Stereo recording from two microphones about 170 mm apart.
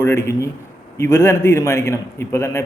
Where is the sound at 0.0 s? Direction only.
15° left (ahead or behind).